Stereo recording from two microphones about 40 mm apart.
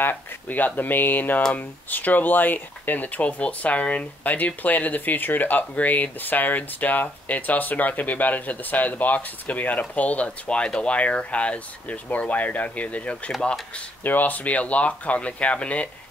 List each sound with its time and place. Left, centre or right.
0.5 s speech: left
14.0 s speech: left